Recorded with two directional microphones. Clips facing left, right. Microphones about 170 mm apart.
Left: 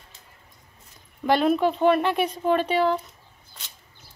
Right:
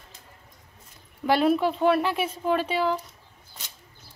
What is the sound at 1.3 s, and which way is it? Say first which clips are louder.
Speech: left 1 dB; 5° right (ahead or behind).